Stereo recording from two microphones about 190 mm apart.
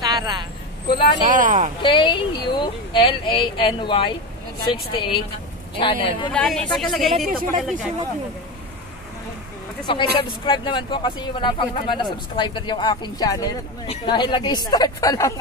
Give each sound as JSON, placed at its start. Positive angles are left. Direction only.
{"t": 0.0, "sound": "vehicle", "side_deg": -20}
{"t": 0.8, "sound": "speech", "side_deg": 25}
{"t": 1.3, "sound": "speech", "side_deg": -40}
{"t": 1.8, "sound": "speech", "side_deg": 25}
{"t": 6.3, "sound": "speech", "side_deg": 5}
{"t": 7.2, "sound": "speech", "side_deg": -50}
{"t": 9.8, "sound": "speech", "side_deg": 25}